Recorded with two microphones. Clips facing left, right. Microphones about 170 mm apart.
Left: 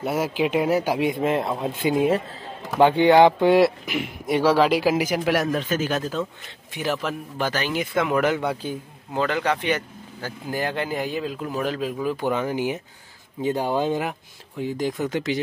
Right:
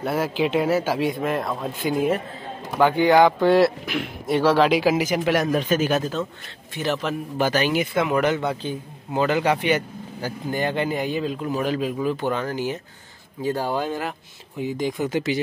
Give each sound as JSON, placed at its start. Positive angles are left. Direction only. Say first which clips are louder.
{"t": 0.0, "sound": "speech", "louder": "even", "side_deg": 10}
{"t": 2.0, "sound": "speech", "louder": "left 1 dB", "side_deg": 30}
{"t": 5.5, "sound": "speech", "louder": "right 3 dB", "side_deg": -15}
{"t": 6.7, "sound": "speech", "louder": "right 1 dB", "side_deg": 10}
{"t": 7.3, "sound": "speech", "louder": "right 5 dB", "side_deg": -10}
{"t": 9.1, "sound": "speech", "louder": "right 3 dB", "side_deg": -10}
{"t": 10.5, "sound": "speech", "louder": "right 2 dB", "side_deg": 0}
{"t": 12.3, "sound": "speech", "louder": "left 1 dB", "side_deg": 15}
{"t": 14.6, "sound": "speech", "louder": "right 1 dB", "side_deg": 0}